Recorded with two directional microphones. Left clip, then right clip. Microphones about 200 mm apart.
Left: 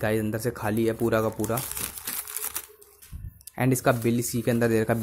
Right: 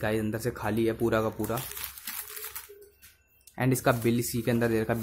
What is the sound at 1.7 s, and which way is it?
Crumpling, 30° left (ahead or behind).